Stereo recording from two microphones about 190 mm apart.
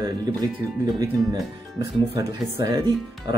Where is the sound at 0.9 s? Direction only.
20° right (ahead or behind).